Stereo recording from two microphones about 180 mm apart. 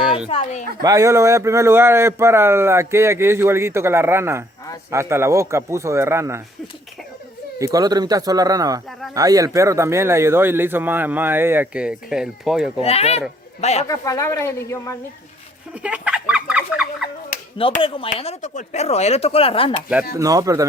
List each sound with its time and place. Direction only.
0.3 s speech: 30° left (ahead or behind)
0.8 s speech: 20° right (ahead or behind)
7.6 s speech: 20° right (ahead or behind); by 12.7 s 5° right (ahead or behind)
12.8 s speech: 35° left (ahead or behind)
13.8 s speech: 20° left (ahead or behind)
15.7 s fowl: 5° right (ahead or behind)
17.7 s speech: 30° left (ahead or behind)
20.1 s speech: 20° right (ahead or behind)